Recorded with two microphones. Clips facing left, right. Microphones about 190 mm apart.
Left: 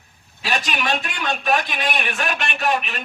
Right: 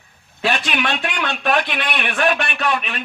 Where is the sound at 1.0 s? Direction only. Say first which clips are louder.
Right 1 dB; 70° right (ahead or behind).